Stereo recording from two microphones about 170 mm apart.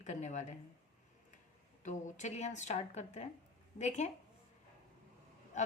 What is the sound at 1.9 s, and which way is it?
A woman's voice, 45° left (ahead or behind).